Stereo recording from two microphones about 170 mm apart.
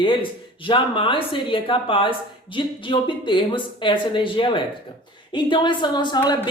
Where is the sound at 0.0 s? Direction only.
30° left (ahead or behind).